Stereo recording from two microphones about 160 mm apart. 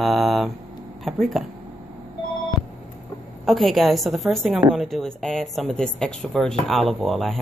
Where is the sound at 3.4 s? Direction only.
Centre (ahead or behind).